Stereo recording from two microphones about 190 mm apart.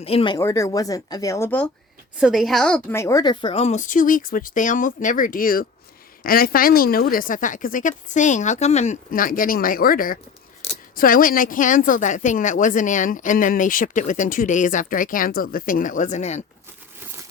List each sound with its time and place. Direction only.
0.0 s a woman's voice: 30° left (ahead or behind)
0.3 s speech: 15° left (ahead or behind)
2.1 s a woman's voice: centre (ahead or behind); by 16.4 s 35° left (ahead or behind)